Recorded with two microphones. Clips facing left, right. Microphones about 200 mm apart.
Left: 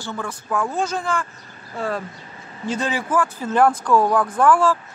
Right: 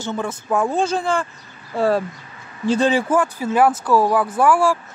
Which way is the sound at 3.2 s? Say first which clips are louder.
Right 1 dB; 10° right (ahead or behind).